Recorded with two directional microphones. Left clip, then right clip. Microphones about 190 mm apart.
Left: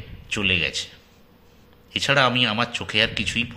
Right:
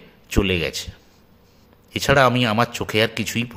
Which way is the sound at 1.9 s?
50° right (ahead or behind).